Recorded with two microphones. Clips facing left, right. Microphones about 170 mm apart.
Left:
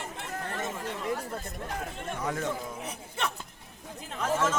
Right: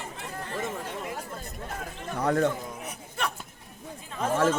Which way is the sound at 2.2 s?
60° right (ahead or behind).